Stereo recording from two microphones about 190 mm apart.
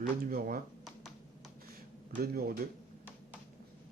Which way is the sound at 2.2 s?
50° right (ahead or behind).